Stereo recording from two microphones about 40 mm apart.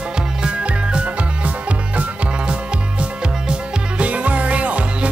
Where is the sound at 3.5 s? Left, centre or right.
Right.